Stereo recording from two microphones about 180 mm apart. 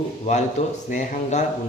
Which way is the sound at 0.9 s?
40° left (ahead or behind).